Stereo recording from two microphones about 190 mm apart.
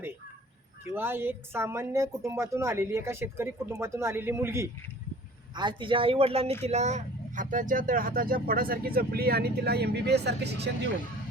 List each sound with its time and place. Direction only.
0.9 s speech: 10° right (ahead or behind)
5.5 s speech: 25° right (ahead or behind); by 10.7 s 60° right (ahead or behind)